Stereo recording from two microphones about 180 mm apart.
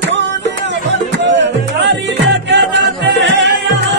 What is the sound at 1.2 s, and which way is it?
Music, 75° right (ahead or behind).